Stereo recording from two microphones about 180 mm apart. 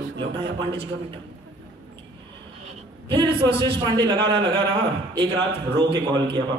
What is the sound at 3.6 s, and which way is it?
Speech, 20° right (ahead or behind).